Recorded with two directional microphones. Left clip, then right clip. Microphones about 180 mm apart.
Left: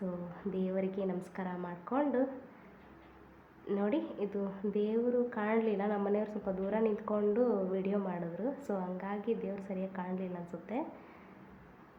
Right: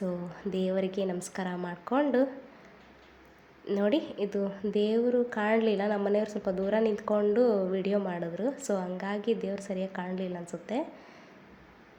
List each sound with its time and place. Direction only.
0.5 s a woman's voice: 20° right (ahead or behind)
3.8 s a woman's voice: 20° right (ahead or behind)